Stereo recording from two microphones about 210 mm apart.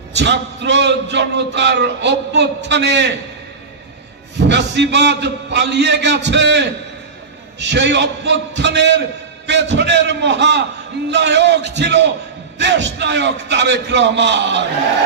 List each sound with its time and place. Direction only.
0.1 s a man's voice: 55° right (ahead or behind)
4.4 s a man's voice: 55° right (ahead or behind)